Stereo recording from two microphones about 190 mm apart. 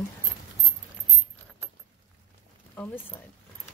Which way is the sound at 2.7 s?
10° left (ahead or behind).